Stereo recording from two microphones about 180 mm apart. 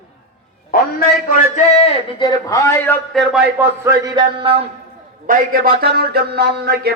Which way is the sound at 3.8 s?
25° right (ahead or behind).